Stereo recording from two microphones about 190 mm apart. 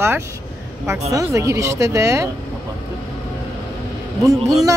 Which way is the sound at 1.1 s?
15° right (ahead or behind).